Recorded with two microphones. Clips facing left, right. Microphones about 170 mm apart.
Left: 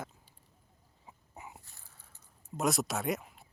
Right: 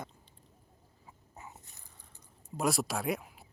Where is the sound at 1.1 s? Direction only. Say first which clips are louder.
Left 1 dB; 15° left (ahead or behind).